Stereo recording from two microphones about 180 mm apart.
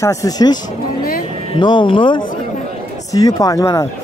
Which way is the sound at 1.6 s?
25° left (ahead or behind).